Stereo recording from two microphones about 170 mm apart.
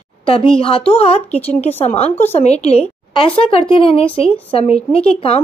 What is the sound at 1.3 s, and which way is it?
Speech, 10° left (ahead or behind).